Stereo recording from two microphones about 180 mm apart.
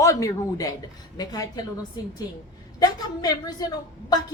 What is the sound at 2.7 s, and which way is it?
Speech, 20° left (ahead or behind).